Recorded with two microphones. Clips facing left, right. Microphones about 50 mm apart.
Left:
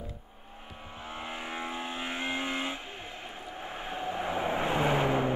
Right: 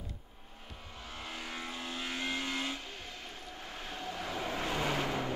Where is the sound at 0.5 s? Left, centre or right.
Left.